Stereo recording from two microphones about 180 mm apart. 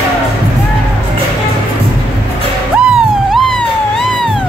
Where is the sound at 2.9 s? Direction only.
Centre (ahead or behind).